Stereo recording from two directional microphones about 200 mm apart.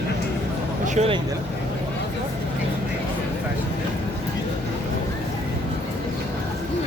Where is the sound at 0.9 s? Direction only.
30° right (ahead or behind).